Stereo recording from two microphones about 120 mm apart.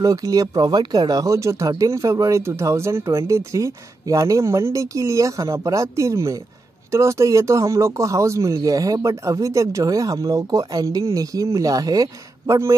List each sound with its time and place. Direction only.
0.0 s speech: 30° right (ahead or behind)